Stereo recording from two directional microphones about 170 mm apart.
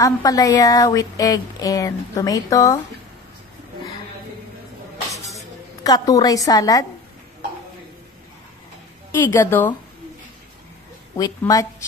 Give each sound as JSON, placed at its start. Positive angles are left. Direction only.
{"t": 0.0, "sound": "speech", "side_deg": 20}
{"t": 5.9, "sound": "speech", "side_deg": 20}
{"t": 9.2, "sound": "a woman's voice", "side_deg": 15}
{"t": 11.1, "sound": "speech", "side_deg": 20}